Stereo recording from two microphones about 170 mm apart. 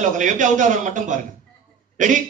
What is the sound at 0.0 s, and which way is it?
A man's voice, 45° right (ahead or behind).